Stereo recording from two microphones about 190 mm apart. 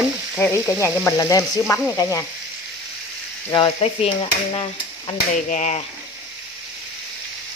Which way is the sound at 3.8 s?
30° left (ahead or behind).